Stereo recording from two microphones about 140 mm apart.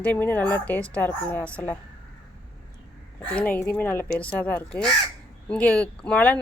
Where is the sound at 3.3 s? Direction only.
10° left (ahead or behind).